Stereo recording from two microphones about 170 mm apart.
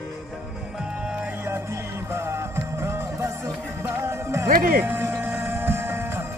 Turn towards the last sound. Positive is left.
turn(degrees=-15)  # may be behind; listen again after turning